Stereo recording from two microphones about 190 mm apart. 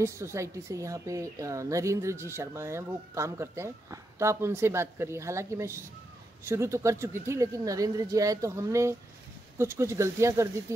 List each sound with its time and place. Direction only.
0.0 s a woman's voice: 15° right (ahead or behind)